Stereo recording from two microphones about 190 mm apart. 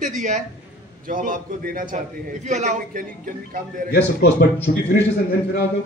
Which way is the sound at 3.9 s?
65° left (ahead or behind).